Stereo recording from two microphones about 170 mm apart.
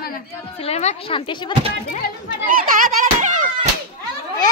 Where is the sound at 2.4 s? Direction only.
55° right (ahead or behind).